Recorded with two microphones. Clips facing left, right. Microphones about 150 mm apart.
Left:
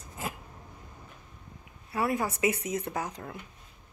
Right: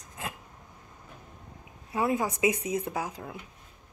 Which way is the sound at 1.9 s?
15° right (ahead or behind).